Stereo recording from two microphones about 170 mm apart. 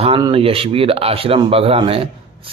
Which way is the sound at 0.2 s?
35° right (ahead or behind).